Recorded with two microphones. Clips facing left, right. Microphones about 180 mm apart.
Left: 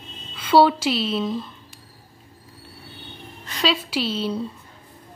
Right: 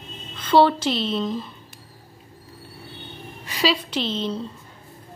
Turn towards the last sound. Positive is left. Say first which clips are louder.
# left 1 dB
turn(degrees=10)  # may be behind; listen again after turning